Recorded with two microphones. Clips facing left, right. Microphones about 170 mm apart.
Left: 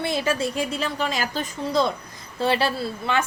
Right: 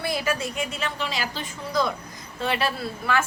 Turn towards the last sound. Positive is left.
turn(degrees=25)  # may be behind; listen again after turning